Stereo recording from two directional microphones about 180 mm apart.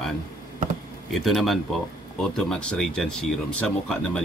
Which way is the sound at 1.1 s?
Centre (ahead or behind).